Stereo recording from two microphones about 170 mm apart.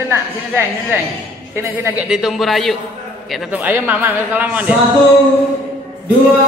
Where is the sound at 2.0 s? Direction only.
5° right (ahead or behind).